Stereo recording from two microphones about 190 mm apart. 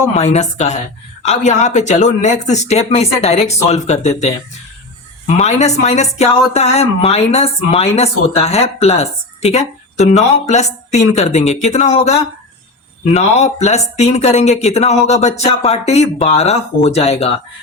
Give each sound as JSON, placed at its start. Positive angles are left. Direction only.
{"t": 0.2, "sound": "speech", "side_deg": 35}